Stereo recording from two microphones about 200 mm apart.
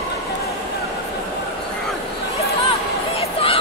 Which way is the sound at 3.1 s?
30° left (ahead or behind).